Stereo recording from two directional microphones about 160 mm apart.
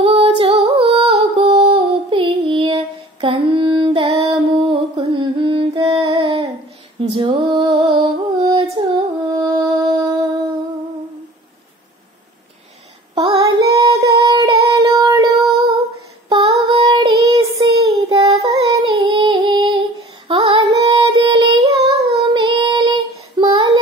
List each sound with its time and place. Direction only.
0.0 s female singing: 40° right (ahead or behind)
0.4 s humming: 35° right (ahead or behind)
1.6 s female singing: 35° right (ahead or behind)
7.5 s music: 30° right (ahead or behind)
13.2 s child singing: 25° right (ahead or behind)
16.3 s female singing: 25° right (ahead or behind)
16.7 s child singing: 30° right (ahead or behind)
18.5 s music: 30° right (ahead or behind)
21.9 s child singing: 35° right (ahead or behind)